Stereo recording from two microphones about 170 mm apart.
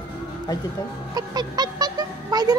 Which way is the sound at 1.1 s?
25° right (ahead or behind).